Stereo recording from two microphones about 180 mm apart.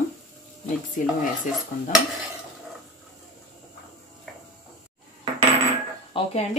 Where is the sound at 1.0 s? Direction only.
50° left (ahead or behind).